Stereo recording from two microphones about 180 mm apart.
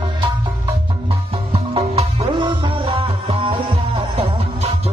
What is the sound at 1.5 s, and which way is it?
Music, 35° right (ahead or behind).